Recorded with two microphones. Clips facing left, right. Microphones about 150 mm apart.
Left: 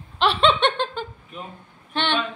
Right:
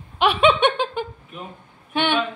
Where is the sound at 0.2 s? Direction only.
10° right (ahead or behind).